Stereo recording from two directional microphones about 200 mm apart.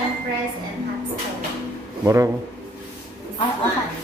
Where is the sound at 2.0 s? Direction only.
15° right (ahead or behind).